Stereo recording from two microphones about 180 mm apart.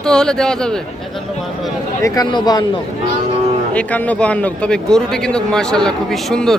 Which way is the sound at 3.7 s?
10° left (ahead or behind).